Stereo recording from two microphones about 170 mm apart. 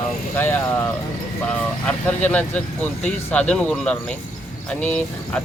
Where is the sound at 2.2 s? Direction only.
10° left (ahead or behind).